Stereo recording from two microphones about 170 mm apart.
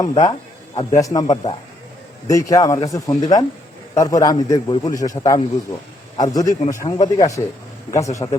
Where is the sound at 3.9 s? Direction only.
20° left (ahead or behind).